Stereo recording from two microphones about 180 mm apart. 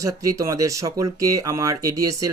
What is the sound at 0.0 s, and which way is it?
Speech, 20° right (ahead or behind).